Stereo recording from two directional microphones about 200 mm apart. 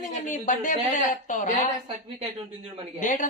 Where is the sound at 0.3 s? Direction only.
40° left (ahead or behind).